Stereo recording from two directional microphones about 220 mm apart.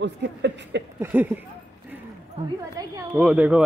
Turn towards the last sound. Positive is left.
turn(degrees=-5)  # may be behind; listen again after turning